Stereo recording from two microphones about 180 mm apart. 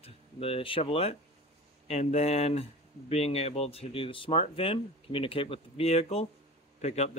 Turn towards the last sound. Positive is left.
turn(degrees=35)  # may be behind; listen again after turning